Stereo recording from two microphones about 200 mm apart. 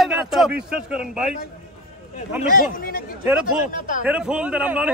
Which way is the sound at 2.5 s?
45° left (ahead or behind).